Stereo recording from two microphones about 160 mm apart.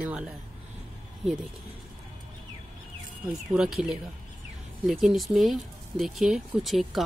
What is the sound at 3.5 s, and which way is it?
A woman's voice, 5° right (ahead or behind).